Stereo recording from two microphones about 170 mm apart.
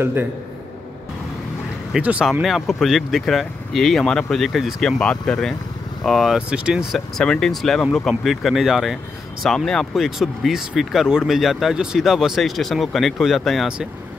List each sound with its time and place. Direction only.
0.0 s a man's voice: 10° right (ahead or behind)
1.9 s speech: 5° right (ahead or behind)